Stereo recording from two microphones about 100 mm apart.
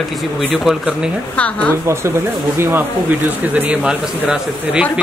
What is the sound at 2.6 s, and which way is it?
A man's voice, 20° right (ahead or behind).